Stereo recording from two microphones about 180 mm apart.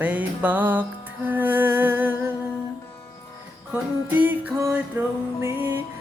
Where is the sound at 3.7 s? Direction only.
10° right (ahead or behind).